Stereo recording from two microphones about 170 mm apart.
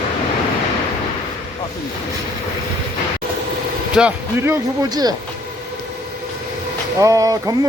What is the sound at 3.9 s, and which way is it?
Speech, 5° right (ahead or behind).